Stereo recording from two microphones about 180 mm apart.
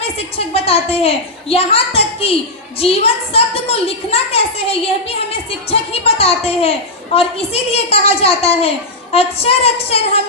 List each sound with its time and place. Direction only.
0.0 s a woman's voice: 35° left (ahead or behind)